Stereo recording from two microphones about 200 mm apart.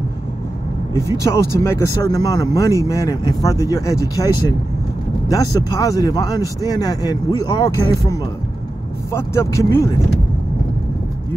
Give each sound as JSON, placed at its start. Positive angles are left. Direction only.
{"t": 1.2, "sound": "speech", "side_deg": 15}
{"t": 5.8, "sound": "speech", "side_deg": 20}